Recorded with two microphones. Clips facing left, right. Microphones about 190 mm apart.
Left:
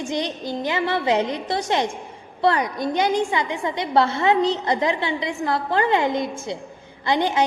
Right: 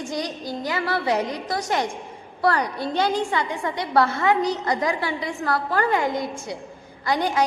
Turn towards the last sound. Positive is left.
turn(degrees=25)  # may be behind; listen again after turning